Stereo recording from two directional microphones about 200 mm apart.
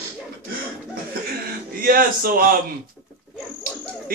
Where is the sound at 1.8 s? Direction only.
45° right (ahead or behind).